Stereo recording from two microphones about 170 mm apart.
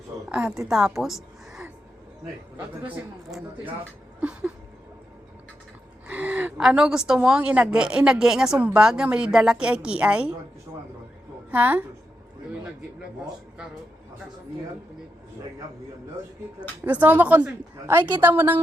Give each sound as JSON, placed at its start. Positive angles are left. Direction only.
{"t": 0.3, "sound": "a woman's voice", "side_deg": -5}
{"t": 4.2, "sound": "a woman's voice", "side_deg": -5}
{"t": 6.1, "sound": "a woman's voice", "side_deg": -10}
{"t": 11.5, "sound": "a woman's voice", "side_deg": -10}
{"t": 16.6, "sound": "a woman's voice", "side_deg": -10}